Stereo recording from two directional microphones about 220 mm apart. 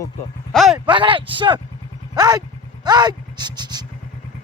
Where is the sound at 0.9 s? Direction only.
20° right (ahead or behind).